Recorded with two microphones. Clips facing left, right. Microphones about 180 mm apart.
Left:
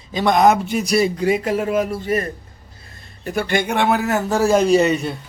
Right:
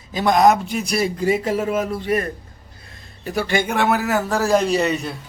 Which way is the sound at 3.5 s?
Centre (ahead or behind).